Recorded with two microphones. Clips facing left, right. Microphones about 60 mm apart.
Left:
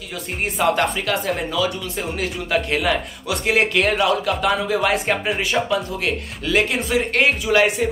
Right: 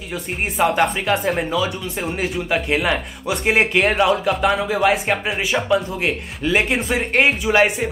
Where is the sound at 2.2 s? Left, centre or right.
Centre.